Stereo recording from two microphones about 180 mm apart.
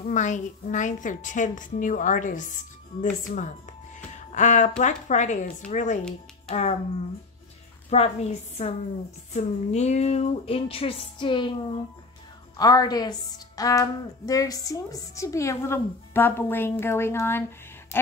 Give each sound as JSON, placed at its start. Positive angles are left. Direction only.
{"t": 0.0, "sound": "a woman's voice", "side_deg": 40}
{"t": 7.9, "sound": "a woman's voice", "side_deg": 35}